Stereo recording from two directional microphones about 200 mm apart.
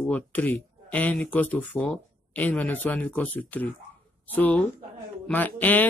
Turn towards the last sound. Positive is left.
turn(degrees=10)  # may be behind; listen again after turning